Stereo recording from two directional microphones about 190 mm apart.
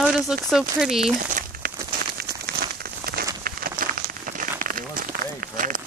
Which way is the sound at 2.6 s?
55° right (ahead or behind).